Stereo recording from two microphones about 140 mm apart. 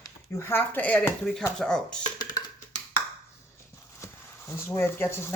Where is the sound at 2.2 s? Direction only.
30° left (ahead or behind).